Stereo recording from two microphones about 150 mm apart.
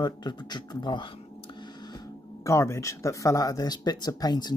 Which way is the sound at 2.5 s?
20° left (ahead or behind).